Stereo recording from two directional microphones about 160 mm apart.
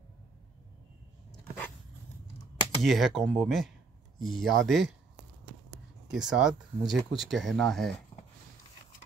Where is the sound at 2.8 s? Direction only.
Centre (ahead or behind).